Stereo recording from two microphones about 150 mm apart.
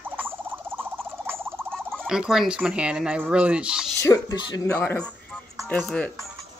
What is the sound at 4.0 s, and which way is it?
Speech, 20° left (ahead or behind).